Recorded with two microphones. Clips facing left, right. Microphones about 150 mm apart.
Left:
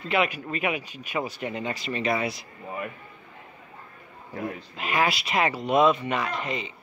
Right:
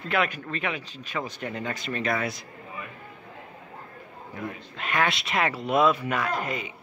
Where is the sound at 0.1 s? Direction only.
5° left (ahead or behind).